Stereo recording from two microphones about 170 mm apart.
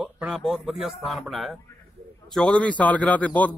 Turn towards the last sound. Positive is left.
turn(degrees=10)  # may be behind; listen again after turning